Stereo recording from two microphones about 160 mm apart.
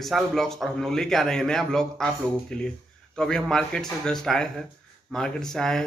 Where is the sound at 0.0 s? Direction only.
Centre (ahead or behind).